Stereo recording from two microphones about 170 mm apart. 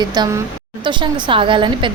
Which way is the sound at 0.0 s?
25° right (ahead or behind).